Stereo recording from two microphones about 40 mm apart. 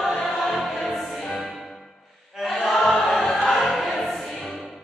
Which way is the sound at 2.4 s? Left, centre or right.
Centre.